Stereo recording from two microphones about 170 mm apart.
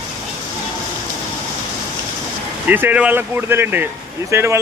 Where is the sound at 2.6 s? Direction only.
10° right (ahead or behind).